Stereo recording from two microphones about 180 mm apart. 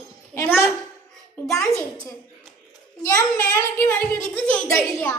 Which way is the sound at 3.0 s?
15° left (ahead or behind).